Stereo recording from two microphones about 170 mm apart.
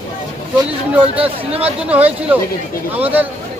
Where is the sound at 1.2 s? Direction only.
35° right (ahead or behind).